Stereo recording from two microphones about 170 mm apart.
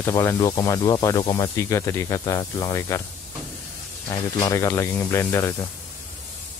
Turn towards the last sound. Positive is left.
turn(degrees=15)  # may be behind; listen again after turning